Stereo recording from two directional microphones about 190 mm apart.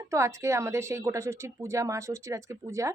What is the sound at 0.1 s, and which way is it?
Speech, 15° right (ahead or behind).